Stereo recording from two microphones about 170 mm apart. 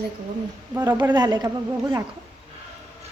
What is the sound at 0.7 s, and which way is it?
Speech, 15° right (ahead or behind).